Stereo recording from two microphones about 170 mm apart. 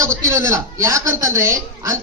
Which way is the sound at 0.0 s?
15° right (ahead or behind).